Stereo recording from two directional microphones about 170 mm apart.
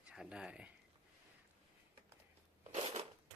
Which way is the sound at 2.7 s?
35° right (ahead or behind).